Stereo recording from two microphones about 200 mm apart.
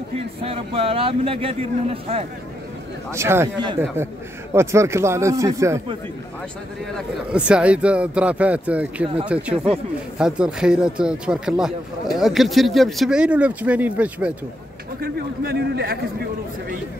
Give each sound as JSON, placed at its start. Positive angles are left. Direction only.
{"t": 0.4, "sound": "speech", "side_deg": -30}
{"t": 3.1, "sound": "speech", "side_deg": -15}
{"t": 7.0, "sound": "speech", "side_deg": -5}
{"t": 15.0, "sound": "a man's voice", "side_deg": -50}